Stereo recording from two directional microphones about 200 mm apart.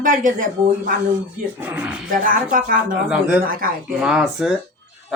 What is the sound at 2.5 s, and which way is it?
Speech, 45° right (ahead or behind).